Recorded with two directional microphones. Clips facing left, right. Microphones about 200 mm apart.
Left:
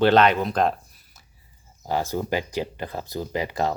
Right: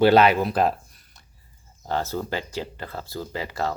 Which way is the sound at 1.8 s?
10° left (ahead or behind).